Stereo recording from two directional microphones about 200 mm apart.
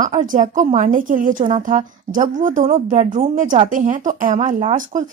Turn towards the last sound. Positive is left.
turn(degrees=-35)  # may be behind; listen again after turning